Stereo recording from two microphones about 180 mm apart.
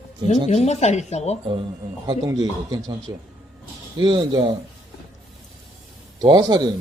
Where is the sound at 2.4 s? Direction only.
20° right (ahead or behind).